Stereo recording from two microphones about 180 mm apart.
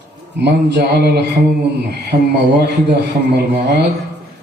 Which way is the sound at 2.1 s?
35° right (ahead or behind).